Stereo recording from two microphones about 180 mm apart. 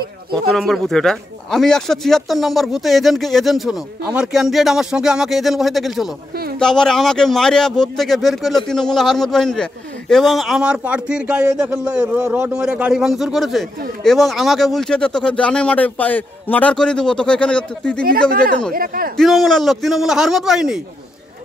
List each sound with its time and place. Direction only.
0.5 s speech: centre (ahead or behind)
18.7 s speech: 50° right (ahead or behind)
19.1 s speech: centre (ahead or behind)